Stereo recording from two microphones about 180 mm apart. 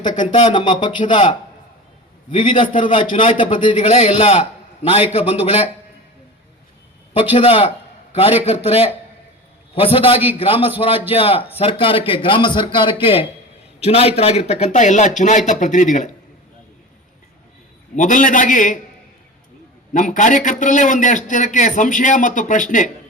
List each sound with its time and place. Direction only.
0.1 s a man's voice: 45° left (ahead or behind)
0.3 s a man's voice: 25° left (ahead or behind)
3.8 s a man's voice: 35° left (ahead or behind)
7.3 s a man's voice: 30° left (ahead or behind)
17.9 s a man's voice: 45° left (ahead or behind)
19.9 s a man's voice: 45° left (ahead or behind)